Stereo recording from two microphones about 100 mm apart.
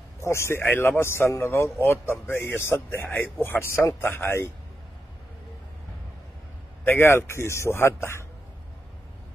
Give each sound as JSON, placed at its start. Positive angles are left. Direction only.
{"t": 0.2, "sound": "speech", "side_deg": 25}
{"t": 6.8, "sound": "speech", "side_deg": 20}